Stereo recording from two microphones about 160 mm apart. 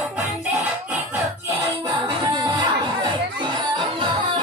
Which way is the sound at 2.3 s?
30° right (ahead or behind).